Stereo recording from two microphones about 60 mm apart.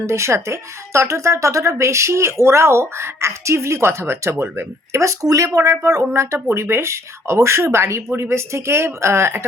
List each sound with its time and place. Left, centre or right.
0.0 s speech: right
4.9 s speech: right
6.1 s speech: right